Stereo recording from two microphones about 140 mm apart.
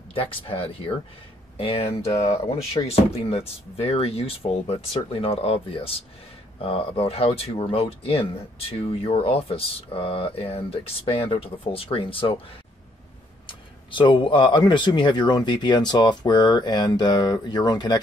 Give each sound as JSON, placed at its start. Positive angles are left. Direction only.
{"t": 0.1, "sound": "speech", "side_deg": 40}
{"t": 2.2, "sound": "speech", "side_deg": 45}
{"t": 13.5, "sound": "speech", "side_deg": 35}